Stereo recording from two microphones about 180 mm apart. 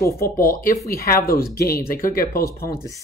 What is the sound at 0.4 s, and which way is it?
Speech, 50° left (ahead or behind).